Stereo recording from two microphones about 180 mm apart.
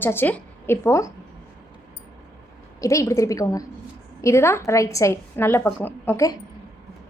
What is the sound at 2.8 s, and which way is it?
A woman's voice, 15° left (ahead or behind).